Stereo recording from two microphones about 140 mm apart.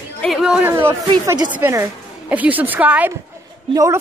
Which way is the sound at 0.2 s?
Centre (ahead or behind).